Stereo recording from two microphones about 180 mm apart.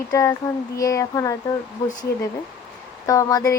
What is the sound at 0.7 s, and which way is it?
Speech, 20° left (ahead or behind).